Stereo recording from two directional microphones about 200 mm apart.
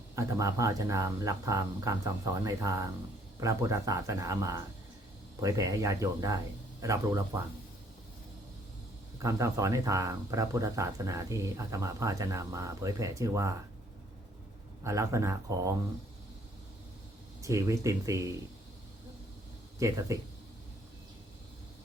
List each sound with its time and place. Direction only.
0.2 s speech: 15° right (ahead or behind)
9.1 s speech: 15° right (ahead or behind)
14.8 s speech: 15° right (ahead or behind)
17.4 s speech: 15° right (ahead or behind)
19.8 s speech: 15° right (ahead or behind)